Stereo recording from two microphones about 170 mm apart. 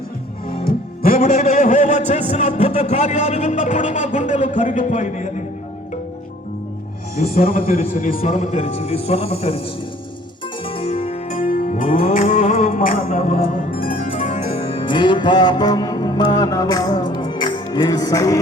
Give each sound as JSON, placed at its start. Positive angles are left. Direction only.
{"t": 0.4, "sound": "a man's voice", "side_deg": 60}
{"t": 7.9, "sound": "a man's voice", "side_deg": 55}
{"t": 10.7, "sound": "music", "side_deg": 35}
{"t": 11.3, "sound": "music", "side_deg": 50}